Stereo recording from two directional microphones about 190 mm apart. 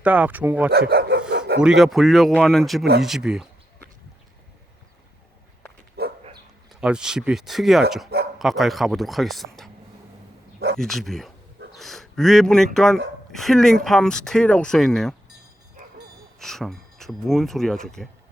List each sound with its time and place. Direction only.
0.0 s speech: 10° right (ahead or behind)
0.7 s speech: 60° right (ahead or behind)
1.3 s dog: 65° right (ahead or behind)
1.6 s speech: centre (ahead or behind)
6.0 s dog: 55° right (ahead or behind)
6.7 s speech: 5° right (ahead or behind)
10.8 s speech: centre (ahead or behind)
16.4 s speech: centre (ahead or behind)